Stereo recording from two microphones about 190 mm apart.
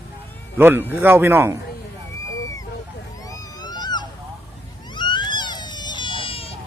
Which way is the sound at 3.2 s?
20° left (ahead or behind).